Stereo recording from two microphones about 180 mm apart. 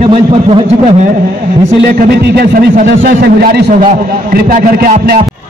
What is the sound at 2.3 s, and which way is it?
A man's voice, 60° right (ahead or behind).